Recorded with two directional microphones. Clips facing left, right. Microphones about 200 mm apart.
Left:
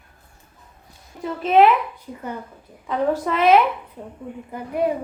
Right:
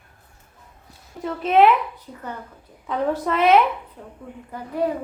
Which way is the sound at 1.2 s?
Centre (ahead or behind).